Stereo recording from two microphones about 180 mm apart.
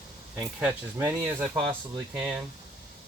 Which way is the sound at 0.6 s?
10° right (ahead or behind).